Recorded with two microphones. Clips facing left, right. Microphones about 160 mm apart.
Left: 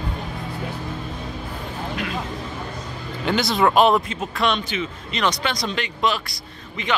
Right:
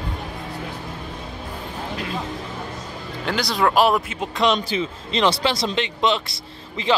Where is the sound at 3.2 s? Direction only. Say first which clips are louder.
Left 2 dB; centre (ahead or behind).